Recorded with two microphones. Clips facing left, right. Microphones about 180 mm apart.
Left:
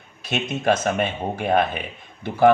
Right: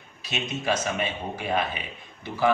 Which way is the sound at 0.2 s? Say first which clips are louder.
Left 6 dB; 55° left (ahead or behind).